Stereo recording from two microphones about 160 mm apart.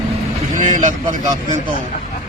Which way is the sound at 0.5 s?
50° right (ahead or behind).